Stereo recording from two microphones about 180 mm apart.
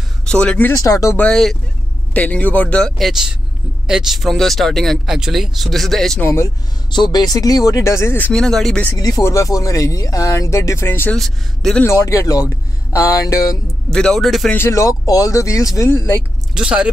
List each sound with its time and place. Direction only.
0.3 s speech: 5° left (ahead or behind)
1.2 s speech: 5° left (ahead or behind)
6.2 s speech: 15° left (ahead or behind)
8.9 s speech: 20° left (ahead or behind)
11.1 s speech: centre (ahead or behind)
11.8 s speech: 15° left (ahead or behind)
13.9 s speech: 5° left (ahead or behind)
14.6 s speech: 15° left (ahead or behind)
16.5 s speech: 5° right (ahead or behind)